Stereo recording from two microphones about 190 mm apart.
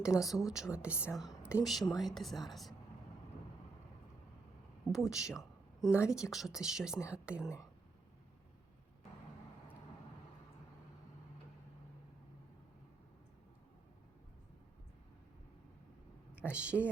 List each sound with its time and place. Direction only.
0.0 s speech: 5° right (ahead or behind)
4.9 s speech: centre (ahead or behind)
16.3 s a woman's voice: 5° right (ahead or behind)